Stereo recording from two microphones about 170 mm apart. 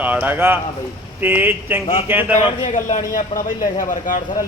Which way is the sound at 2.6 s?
45° left (ahead or behind).